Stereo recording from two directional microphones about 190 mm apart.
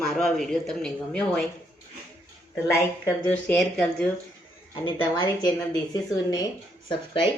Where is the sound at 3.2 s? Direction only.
10° left (ahead or behind).